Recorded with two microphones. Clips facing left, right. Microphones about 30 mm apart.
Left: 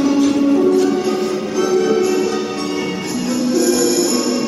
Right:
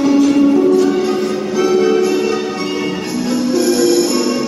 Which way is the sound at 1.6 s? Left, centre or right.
Right.